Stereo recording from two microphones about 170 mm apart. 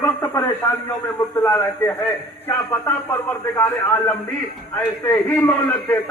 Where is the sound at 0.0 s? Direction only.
15° left (ahead or behind).